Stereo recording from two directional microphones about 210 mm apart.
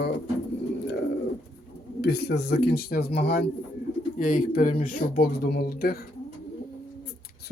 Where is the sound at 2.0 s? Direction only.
50° left (ahead or behind).